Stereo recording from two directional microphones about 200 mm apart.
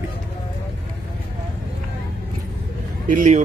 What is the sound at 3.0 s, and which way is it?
Speech, 40° right (ahead or behind).